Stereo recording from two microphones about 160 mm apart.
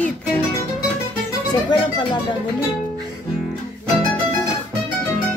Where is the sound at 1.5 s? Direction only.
30° left (ahead or behind).